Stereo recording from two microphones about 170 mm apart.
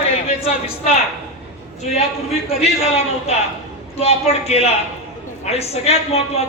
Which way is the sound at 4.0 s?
35° left (ahead or behind).